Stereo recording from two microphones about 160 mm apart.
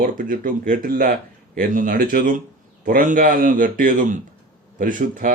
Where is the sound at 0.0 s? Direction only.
60° right (ahead or behind).